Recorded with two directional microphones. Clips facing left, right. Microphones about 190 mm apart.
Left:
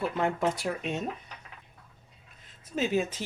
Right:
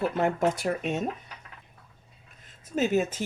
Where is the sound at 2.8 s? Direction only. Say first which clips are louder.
Right 3 dB; 50° right (ahead or behind).